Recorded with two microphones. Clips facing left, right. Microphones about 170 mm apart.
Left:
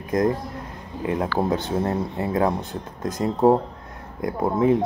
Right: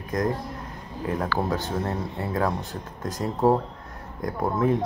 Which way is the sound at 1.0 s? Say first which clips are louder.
Left 3 dB; 20° left (ahead or behind).